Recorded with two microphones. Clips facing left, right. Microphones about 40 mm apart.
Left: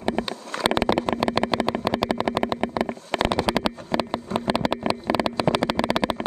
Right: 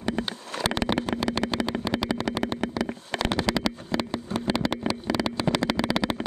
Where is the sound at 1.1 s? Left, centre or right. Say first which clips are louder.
Left 4 dB; centre.